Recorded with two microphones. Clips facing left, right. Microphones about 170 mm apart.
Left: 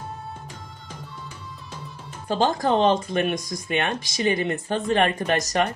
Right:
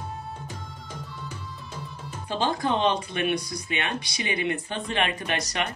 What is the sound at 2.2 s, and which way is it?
Speech, 45° left (ahead or behind).